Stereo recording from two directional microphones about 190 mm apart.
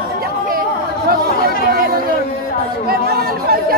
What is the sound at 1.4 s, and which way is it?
Chatter, 50° right (ahead or behind).